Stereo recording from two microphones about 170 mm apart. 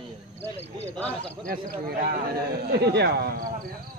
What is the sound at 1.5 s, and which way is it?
Speech, 60° right (ahead or behind).